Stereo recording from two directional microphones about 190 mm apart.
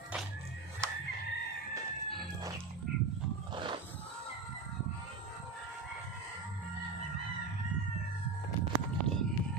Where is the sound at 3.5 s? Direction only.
25° right (ahead or behind).